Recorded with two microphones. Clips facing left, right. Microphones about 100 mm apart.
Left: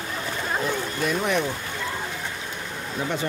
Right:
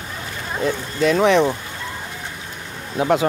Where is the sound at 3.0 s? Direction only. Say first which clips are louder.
Right 10 dB; 90° right.